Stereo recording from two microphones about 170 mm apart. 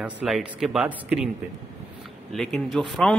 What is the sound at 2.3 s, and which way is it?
Speech, centre (ahead or behind).